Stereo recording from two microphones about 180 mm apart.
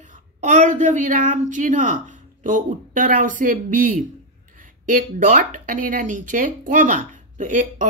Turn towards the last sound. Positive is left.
turn(degrees=-45)  # may be behind; listen again after turning